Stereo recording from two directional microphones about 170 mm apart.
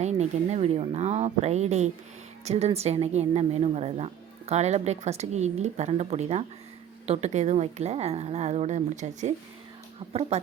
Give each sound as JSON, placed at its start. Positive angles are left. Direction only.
{"t": 0.0, "sound": "speech", "side_deg": -40}